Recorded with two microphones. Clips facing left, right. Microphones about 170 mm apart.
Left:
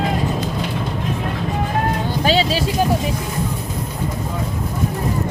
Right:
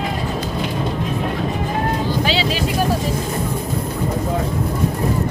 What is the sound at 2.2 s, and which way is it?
Vehicle, 40° left (ahead or behind).